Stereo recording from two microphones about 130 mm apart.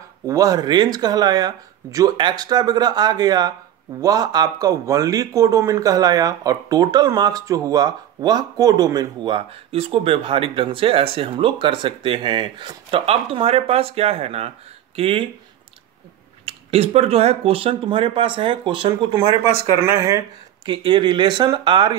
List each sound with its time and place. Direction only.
0.3 s speech: 25° right (ahead or behind); by 15.2 s 45° right (ahead or behind)
16.4 s speech: 50° right (ahead or behind)
19.6 s speech: 20° right (ahead or behind)
20.6 s speech: 35° right (ahead or behind)